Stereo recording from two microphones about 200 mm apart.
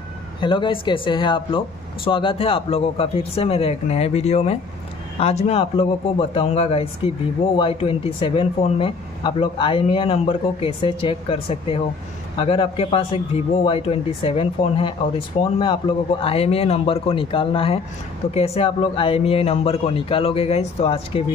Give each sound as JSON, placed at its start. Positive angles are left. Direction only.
{"t": 0.4, "sound": "speech", "side_deg": 25}